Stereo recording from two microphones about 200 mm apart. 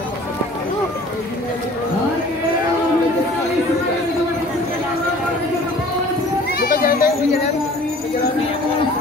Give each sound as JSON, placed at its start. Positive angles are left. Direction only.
{"t": 6.6, "sound": "children playing", "side_deg": 45}